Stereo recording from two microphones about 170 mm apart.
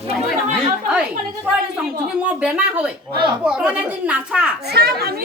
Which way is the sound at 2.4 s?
5° right (ahead or behind).